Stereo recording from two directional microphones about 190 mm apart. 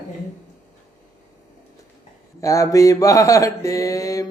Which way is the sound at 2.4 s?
15° left (ahead or behind).